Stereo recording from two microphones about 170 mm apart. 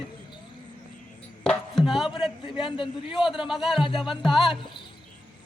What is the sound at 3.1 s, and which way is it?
Speech, centre (ahead or behind).